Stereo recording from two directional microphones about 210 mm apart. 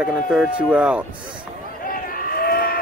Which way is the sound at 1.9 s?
45° left (ahead or behind).